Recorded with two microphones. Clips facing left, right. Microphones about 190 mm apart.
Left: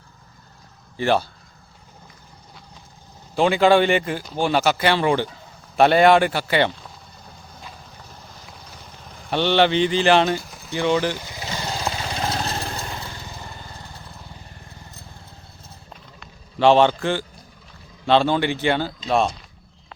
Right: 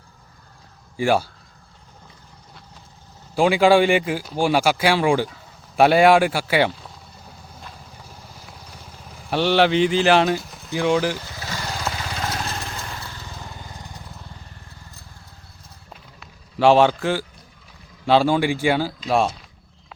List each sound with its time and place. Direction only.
0.9 s speech: 10° right (ahead or behind)
3.3 s a man's voice: 10° right (ahead or behind)
7.9 s vehicle: 10° right (ahead or behind)
11.2 s vehicle: 15° left (ahead or behind)
13.6 s vehicle: 15° right (ahead or behind)
15.9 s a sound: 5° right (ahead or behind)
18.0 s speech: 5° right (ahead or behind)